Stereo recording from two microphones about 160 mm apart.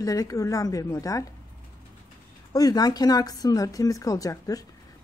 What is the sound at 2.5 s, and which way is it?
A man's voice, 25° left (ahead or behind).